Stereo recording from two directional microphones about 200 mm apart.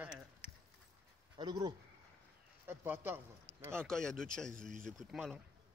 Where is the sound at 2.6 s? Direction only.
10° right (ahead or behind).